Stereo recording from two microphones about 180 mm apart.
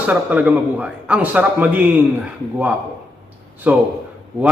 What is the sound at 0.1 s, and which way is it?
A man's voice, 5° right (ahead or behind).